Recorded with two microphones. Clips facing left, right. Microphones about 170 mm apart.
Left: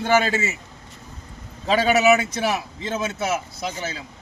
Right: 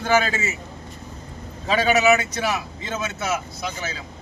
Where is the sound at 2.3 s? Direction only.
30° left (ahead or behind).